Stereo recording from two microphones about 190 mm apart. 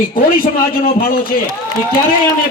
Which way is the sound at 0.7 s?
50° left (ahead or behind).